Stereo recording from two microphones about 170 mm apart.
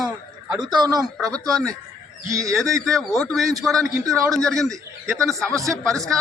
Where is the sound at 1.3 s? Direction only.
5° left (ahead or behind).